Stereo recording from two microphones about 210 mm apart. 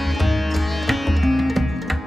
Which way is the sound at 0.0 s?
Centre (ahead or behind).